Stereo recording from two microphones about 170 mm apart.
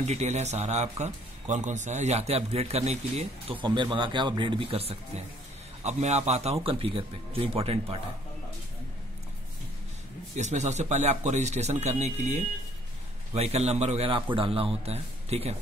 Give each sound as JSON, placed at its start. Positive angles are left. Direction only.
{"t": 0.0, "sound": "speech", "side_deg": -40}
{"t": 3.6, "sound": "a man's voice", "side_deg": -25}
{"t": 10.3, "sound": "speech", "side_deg": -45}